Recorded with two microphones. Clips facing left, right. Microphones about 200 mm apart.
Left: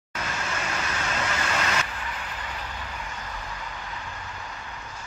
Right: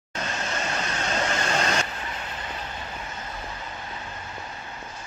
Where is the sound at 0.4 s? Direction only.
35° right (ahead or behind).